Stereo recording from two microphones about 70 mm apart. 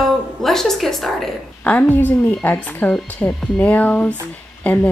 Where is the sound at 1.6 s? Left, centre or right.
Left.